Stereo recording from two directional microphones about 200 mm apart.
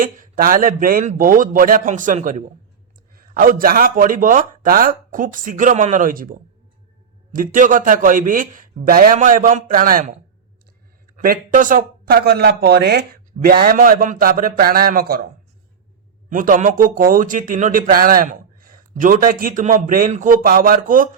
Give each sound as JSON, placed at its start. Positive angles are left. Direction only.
{"t": 0.0, "sound": "a man's voice", "side_deg": -45}
{"t": 7.3, "sound": "a man's voice", "side_deg": -40}
{"t": 11.2, "sound": "a man's voice", "side_deg": -45}
{"t": 16.3, "sound": "a man's voice", "side_deg": -40}